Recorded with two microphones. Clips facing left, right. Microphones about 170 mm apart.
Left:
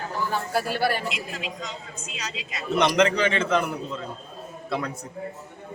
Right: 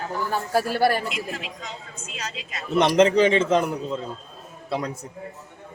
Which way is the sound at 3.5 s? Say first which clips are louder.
Right 3 dB; 40° right (ahead or behind).